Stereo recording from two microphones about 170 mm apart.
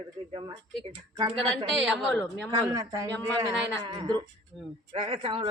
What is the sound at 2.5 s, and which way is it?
Speech, 20° right (ahead or behind).